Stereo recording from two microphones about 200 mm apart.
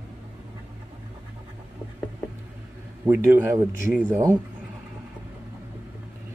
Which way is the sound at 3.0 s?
10° right (ahead or behind).